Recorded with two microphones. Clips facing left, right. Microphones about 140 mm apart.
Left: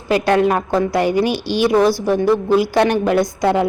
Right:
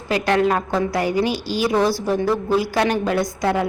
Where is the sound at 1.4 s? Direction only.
75° left (ahead or behind).